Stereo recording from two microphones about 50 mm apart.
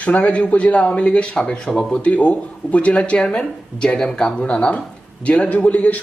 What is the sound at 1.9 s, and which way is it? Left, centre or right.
A man's voice, left.